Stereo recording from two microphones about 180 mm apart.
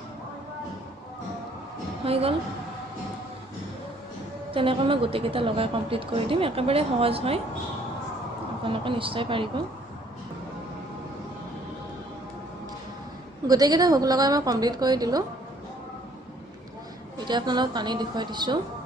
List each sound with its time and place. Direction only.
2.0 s a woman's voice: 30° right (ahead or behind)
4.5 s a woman's voice: 30° right (ahead or behind)
8.6 s a woman's voice: 30° right (ahead or behind)
13.5 s a woman's voice: 20° right (ahead or behind)
17.2 s a woman's voice: 25° right (ahead or behind)